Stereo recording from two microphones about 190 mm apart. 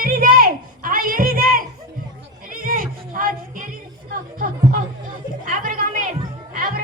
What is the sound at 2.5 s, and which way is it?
Music, 45° right (ahead or behind).